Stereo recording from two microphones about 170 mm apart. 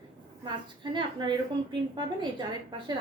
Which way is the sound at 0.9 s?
25° right (ahead or behind).